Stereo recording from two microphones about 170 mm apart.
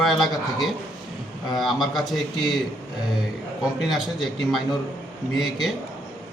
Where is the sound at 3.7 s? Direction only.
Centre (ahead or behind).